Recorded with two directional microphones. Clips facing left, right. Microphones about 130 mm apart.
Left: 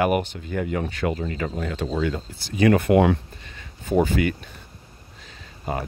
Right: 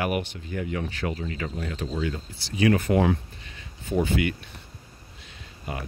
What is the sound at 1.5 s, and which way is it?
Speech, 70° left (ahead or behind).